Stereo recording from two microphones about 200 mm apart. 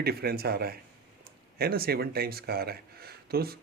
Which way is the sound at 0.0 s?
50° right (ahead or behind).